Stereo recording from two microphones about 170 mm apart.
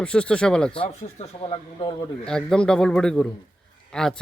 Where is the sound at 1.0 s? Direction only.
40° left (ahead or behind).